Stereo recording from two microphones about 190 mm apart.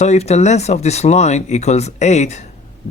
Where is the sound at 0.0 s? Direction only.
35° left (ahead or behind).